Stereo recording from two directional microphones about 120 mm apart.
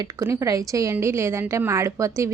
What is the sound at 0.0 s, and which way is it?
A woman's voice, 25° right (ahead or behind).